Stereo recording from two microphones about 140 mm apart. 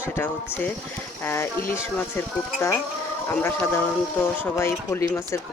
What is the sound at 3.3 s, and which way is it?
A woman's voice, 15° left (ahead or behind).